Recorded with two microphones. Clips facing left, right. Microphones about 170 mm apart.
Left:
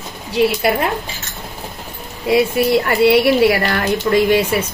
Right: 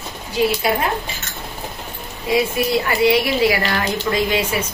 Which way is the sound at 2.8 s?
60° left (ahead or behind).